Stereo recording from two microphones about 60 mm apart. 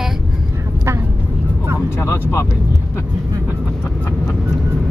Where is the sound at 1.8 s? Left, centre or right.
Left.